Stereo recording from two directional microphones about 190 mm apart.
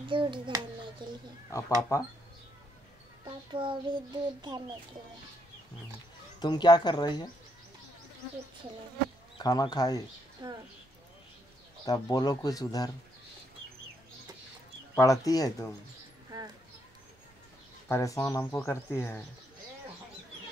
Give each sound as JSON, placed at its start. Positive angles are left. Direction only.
{"t": 0.1, "sound": "a child's voice", "side_deg": -25}
{"t": 1.8, "sound": "speech", "side_deg": 15}
{"t": 3.3, "sound": "a child's voice", "side_deg": -25}
{"t": 6.4, "sound": "speech", "side_deg": 20}
{"t": 9.4, "sound": "speech", "side_deg": 20}
{"t": 10.4, "sound": "a child's voice", "side_deg": -25}
{"t": 11.8, "sound": "speech", "side_deg": 20}
{"t": 15.0, "sound": "speech", "side_deg": 20}
{"t": 16.3, "sound": "a sound", "side_deg": -20}
{"t": 17.8, "sound": "speech", "side_deg": 15}